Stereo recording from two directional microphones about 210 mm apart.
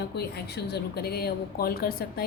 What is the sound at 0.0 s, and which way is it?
Speech, 50° left (ahead or behind).